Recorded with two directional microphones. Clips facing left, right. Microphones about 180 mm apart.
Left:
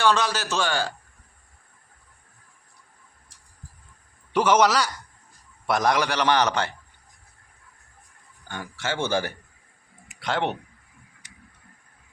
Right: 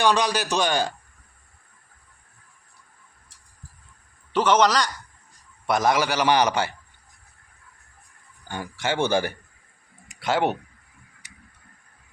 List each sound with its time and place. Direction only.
0.0 s a man's voice: 15° right (ahead or behind)
4.3 s a man's voice: 10° left (ahead or behind); by 6.7 s 10° right (ahead or behind)
8.4 s a man's voice: 15° right (ahead or behind)
11.2 s tick-tock: 10° right (ahead or behind)